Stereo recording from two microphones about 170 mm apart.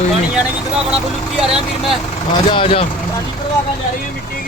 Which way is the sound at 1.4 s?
5° right (ahead or behind).